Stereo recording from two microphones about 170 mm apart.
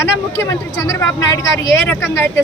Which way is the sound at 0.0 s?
15° left (ahead or behind).